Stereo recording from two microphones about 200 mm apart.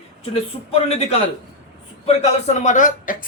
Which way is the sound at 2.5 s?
35° left (ahead or behind).